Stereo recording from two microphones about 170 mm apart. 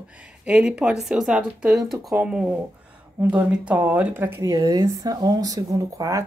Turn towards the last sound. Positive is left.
turn(degrees=-20)  # may be behind; listen again after turning